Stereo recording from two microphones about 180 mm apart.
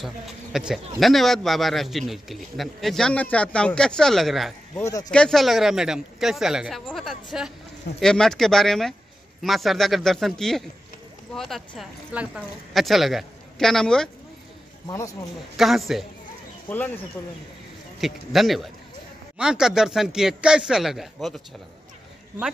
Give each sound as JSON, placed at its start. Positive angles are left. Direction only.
{"t": 0.0, "sound": "a man's voice", "side_deg": -5}
{"t": 14.9, "sound": "speech", "side_deg": 15}
{"t": 15.5, "sound": "a man's voice", "side_deg": 0}
{"t": 18.0, "sound": "a man's voice", "side_deg": 0}